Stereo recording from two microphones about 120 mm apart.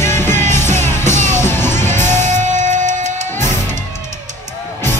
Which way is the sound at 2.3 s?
90° right.